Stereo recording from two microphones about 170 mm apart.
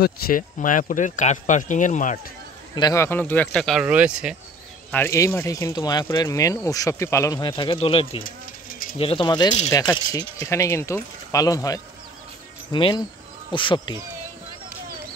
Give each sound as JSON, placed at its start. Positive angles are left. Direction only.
{"t": 0.0, "sound": "speech", "side_deg": 55}
{"t": 2.7, "sound": "speech", "side_deg": 20}
{"t": 3.8, "sound": "speech", "side_deg": -10}
{"t": 4.9, "sound": "speech", "side_deg": 15}
{"t": 8.2, "sound": "a sound", "side_deg": 55}
{"t": 8.9, "sound": "speech", "side_deg": 30}